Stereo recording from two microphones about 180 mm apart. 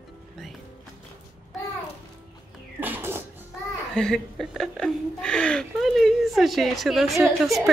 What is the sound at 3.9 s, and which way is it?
Speech, 5° left (ahead or behind).